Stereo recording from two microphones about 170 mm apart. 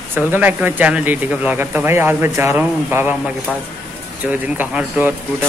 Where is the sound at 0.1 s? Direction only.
10° right (ahead or behind).